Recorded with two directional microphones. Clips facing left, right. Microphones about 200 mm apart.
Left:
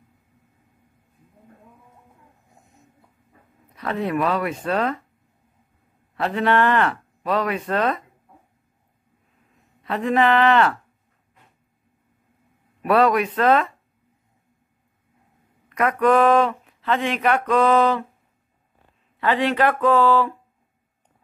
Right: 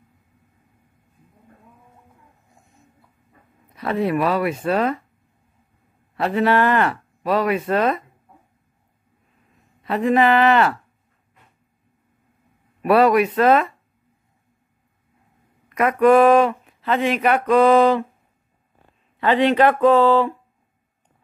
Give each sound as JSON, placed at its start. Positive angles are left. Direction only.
{"t": 3.7, "sound": "speech", "side_deg": -5}
{"t": 6.1, "sound": "speech", "side_deg": -10}
{"t": 9.8, "sound": "speech", "side_deg": -5}
{"t": 12.8, "sound": "speech", "side_deg": -10}
{"t": 15.7, "sound": "speech", "side_deg": -5}
{"t": 19.1, "sound": "speech", "side_deg": -25}